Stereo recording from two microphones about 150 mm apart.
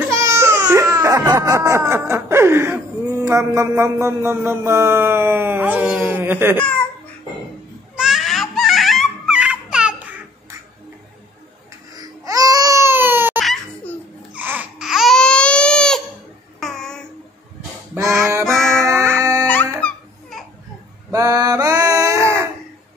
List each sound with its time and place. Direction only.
0.0 s a sound: 20° right (ahead or behind)
8.0 s baby cry: centre (ahead or behind)
11.9 s baby cry: 25° right (ahead or behind); by 16.0 s 5° left (ahead or behind)
16.5 s child singing: 5° left (ahead or behind)
18.0 s music: centre (ahead or behind)
18.9 s howl: centre (ahead or behind)
19.4 s music: 10° left (ahead or behind)
21.1 s a sound: 20° right (ahead or behind)